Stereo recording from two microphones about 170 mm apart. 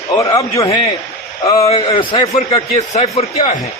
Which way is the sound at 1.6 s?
35° left (ahead or behind).